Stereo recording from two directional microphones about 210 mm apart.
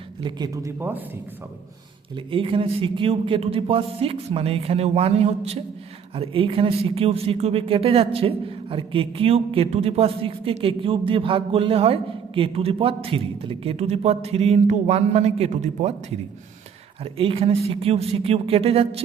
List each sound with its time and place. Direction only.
0.2 s speech: 20° right (ahead or behind)
2.1 s a woman's voice: 25° right (ahead or behind)